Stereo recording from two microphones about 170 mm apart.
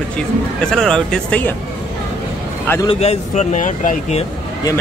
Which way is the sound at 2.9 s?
35° left (ahead or behind).